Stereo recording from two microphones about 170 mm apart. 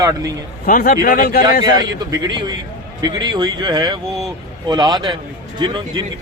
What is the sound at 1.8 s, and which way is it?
A man's voice, 25° right (ahead or behind).